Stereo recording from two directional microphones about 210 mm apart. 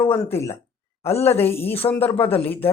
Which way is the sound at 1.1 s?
30° left (ahead or behind).